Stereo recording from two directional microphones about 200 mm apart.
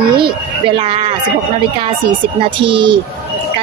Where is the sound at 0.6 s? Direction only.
25° right (ahead or behind).